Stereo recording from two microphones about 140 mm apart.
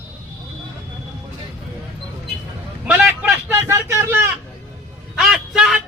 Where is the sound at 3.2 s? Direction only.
20° right (ahead or behind).